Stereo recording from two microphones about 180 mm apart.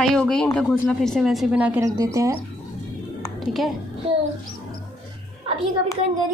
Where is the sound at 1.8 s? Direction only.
15° right (ahead or behind).